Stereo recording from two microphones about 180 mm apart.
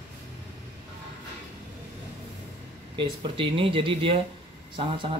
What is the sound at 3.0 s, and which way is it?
Speech, 30° right (ahead or behind).